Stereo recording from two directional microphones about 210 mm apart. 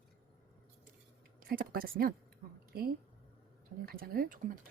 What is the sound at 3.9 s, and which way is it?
Speech, 45° right (ahead or behind).